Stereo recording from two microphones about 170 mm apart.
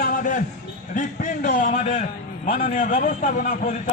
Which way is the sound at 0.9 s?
50° left (ahead or behind).